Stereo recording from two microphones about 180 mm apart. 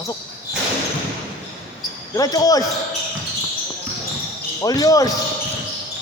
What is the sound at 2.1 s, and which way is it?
Speech, 20° left (ahead or behind).